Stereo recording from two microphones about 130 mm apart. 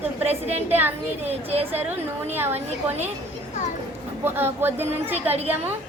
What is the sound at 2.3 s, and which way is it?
Speech, 15° right (ahead or behind).